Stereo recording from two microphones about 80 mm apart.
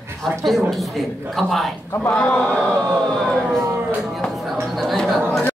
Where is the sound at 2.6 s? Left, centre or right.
Right.